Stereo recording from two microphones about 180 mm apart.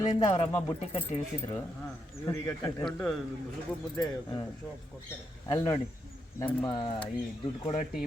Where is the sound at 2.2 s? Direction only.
15° left (ahead or behind).